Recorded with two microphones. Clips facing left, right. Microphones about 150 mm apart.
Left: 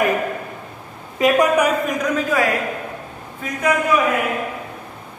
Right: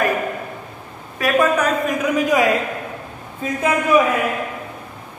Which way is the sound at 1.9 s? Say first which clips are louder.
Right 2 dB; 10° right (ahead or behind).